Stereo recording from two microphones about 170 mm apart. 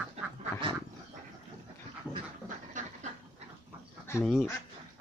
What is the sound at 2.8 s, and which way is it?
Dog, 45° right (ahead or behind).